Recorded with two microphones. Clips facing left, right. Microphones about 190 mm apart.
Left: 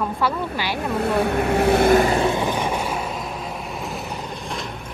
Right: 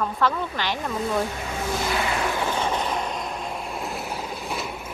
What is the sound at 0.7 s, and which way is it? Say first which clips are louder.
Speech: left 6 dB; 65° left (ahead or behind).